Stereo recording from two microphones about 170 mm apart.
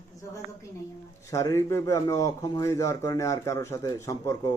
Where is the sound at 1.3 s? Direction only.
20° left (ahead or behind).